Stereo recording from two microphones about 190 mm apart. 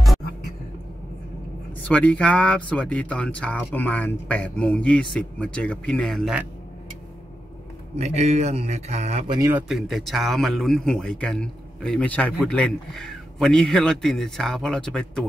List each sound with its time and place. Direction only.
1.9 s speech: 5° left (ahead or behind)
7.9 s a man's voice: 35° right (ahead or behind)
9.3 s speech: 15° right (ahead or behind); by 15.2 s 5° left (ahead or behind)